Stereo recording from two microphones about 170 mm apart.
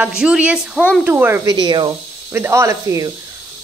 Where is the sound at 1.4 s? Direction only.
25° right (ahead or behind).